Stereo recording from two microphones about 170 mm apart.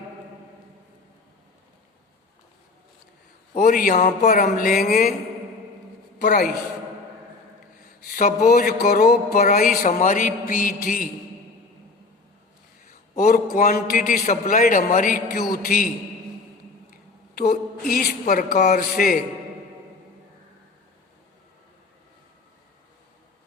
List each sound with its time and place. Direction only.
3.5 s a man's voice: 50° left (ahead or behind)
4.3 s speech: 60° left (ahead or behind)
6.1 s a man's voice: 50° left (ahead or behind)
8.0 s a man's voice: 55° left (ahead or behind)
9.8 s a man's voice: 50° left (ahead or behind)
13.1 s a man's voice: 55° left (ahead or behind)
17.5 s speech: 55° left (ahead or behind)